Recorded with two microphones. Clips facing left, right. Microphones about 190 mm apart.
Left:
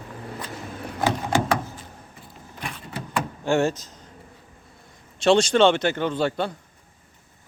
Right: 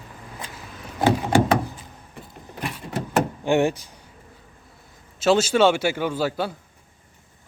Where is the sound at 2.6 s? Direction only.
10° right (ahead or behind).